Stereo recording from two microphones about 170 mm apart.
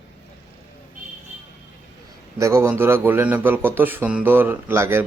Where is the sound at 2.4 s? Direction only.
15° right (ahead or behind).